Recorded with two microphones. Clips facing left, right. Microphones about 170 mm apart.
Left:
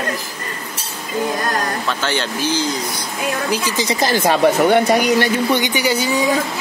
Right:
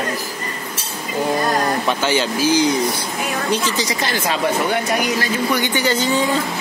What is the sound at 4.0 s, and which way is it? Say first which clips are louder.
Speech: left 5 dB; 45° left (ahead or behind).